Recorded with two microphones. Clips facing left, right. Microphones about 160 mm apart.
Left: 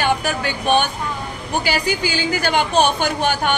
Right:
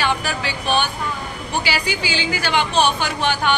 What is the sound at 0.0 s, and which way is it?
A woman's voice, 50° left (ahead or behind).